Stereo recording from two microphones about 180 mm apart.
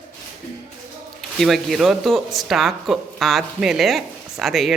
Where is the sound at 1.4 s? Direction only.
Centre (ahead or behind).